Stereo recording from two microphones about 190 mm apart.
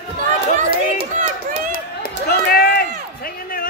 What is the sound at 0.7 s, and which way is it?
Run, 30° right (ahead or behind).